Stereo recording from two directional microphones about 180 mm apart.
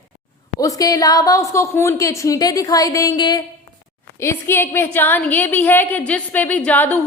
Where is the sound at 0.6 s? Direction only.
20° left (ahead or behind).